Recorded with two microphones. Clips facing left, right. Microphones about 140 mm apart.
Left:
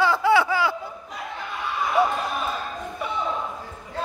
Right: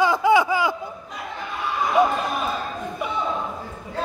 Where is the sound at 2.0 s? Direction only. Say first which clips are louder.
Right 3 dB; 15° right (ahead or behind).